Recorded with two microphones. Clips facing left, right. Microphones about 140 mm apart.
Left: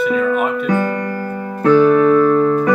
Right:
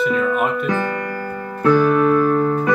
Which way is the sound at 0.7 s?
20° left (ahead or behind).